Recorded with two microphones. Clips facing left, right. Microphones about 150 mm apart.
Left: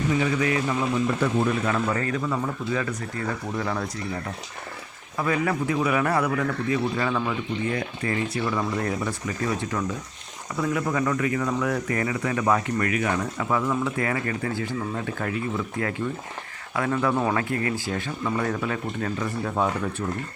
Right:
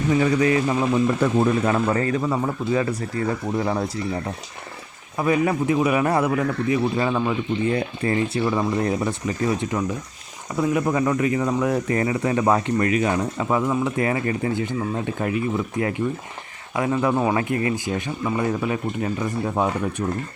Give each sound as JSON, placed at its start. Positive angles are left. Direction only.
{"t": 0.3, "sound": "a man's voice", "side_deg": -30}